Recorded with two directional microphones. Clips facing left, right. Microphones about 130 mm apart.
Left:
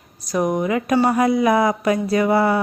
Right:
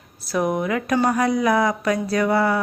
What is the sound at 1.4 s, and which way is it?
Speech, 25° left (ahead or behind).